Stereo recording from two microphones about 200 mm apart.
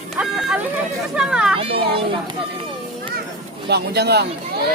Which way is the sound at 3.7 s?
55° right (ahead or behind).